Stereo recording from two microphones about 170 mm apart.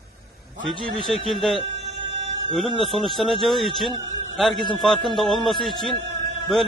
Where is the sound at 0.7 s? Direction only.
Centre (ahead or behind).